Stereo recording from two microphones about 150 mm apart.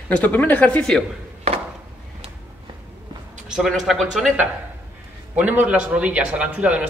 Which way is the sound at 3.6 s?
Centre (ahead or behind).